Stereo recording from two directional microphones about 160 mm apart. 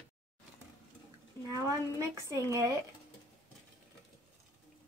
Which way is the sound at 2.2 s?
20° right (ahead or behind).